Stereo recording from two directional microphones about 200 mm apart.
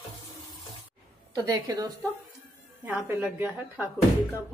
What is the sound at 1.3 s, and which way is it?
Speech, 20° right (ahead or behind).